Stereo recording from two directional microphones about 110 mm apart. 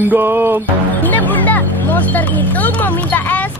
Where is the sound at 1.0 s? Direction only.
15° left (ahead or behind).